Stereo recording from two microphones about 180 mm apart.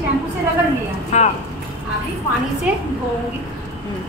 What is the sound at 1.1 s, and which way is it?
Speech, 40° left (ahead or behind).